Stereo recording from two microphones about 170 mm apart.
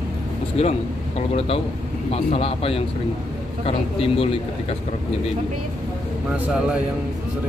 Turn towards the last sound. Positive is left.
turn(degrees=-5)  # may be behind; listen again after turning